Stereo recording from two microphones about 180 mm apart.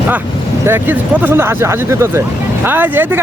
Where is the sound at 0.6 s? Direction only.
10° right (ahead or behind).